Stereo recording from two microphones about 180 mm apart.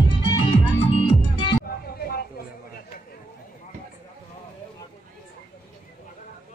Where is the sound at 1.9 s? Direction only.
60° left (ahead or behind).